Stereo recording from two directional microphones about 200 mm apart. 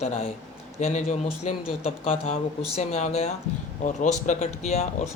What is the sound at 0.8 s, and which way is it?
Speech, 35° left (ahead or behind).